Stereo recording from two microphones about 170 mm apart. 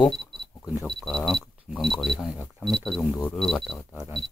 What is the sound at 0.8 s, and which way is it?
Speech, centre (ahead or behind).